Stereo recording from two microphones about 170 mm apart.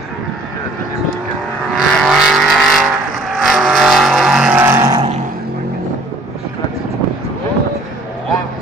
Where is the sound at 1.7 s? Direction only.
Centre (ahead or behind); by 5.0 s 20° right (ahead or behind).